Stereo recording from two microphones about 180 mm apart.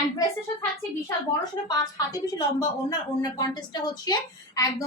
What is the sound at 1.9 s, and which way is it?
A woman's voice, 20° left (ahead or behind).